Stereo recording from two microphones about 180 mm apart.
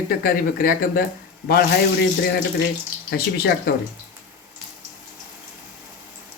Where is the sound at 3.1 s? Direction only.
60° left (ahead or behind).